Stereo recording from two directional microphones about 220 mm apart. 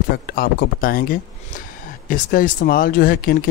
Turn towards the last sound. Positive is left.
turn(degrees=40)  # may be behind; listen again after turning